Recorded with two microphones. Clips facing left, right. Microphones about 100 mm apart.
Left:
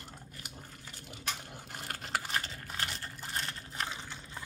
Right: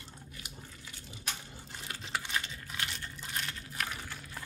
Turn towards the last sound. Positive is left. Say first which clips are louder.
# even
turn(degrees=20)  # may be behind; listen again after turning